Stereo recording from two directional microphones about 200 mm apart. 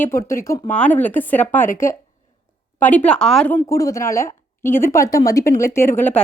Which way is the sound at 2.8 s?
10° left (ahead or behind).